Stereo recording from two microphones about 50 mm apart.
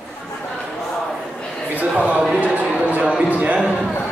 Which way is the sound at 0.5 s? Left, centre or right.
Centre.